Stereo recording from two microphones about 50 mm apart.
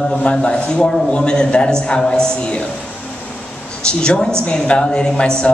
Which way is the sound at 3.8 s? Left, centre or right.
Centre.